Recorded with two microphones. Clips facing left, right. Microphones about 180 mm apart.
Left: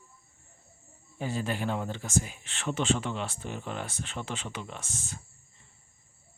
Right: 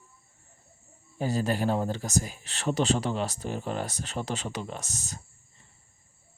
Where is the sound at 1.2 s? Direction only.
40° right (ahead or behind).